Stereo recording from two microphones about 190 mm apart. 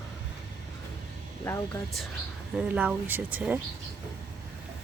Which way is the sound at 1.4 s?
15° left (ahead or behind).